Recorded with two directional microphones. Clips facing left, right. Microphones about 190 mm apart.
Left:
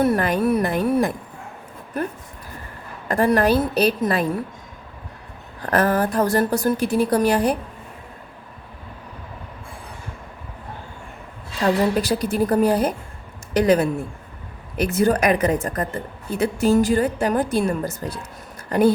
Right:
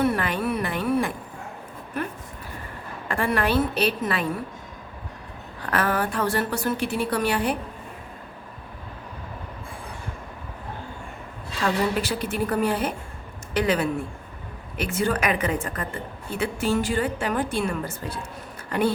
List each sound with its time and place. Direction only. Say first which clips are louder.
0.0 s a woman's voice: left 5 dB; 40° left (ahead or behind)
3.1 s a woman's voice: left 6 dB; 40° left (ahead or behind)
5.6 s a woman's voice: left 5 dB; 40° left (ahead or behind)
11.6 s a woman's voice: left 5 dB; 40° left (ahead or behind)